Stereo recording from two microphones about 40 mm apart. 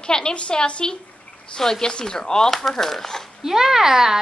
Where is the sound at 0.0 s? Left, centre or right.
Left.